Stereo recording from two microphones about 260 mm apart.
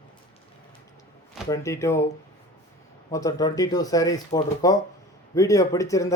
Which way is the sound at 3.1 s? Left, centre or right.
Centre.